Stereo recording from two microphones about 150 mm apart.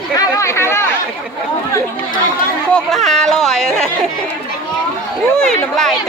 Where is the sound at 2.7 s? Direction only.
Centre (ahead or behind).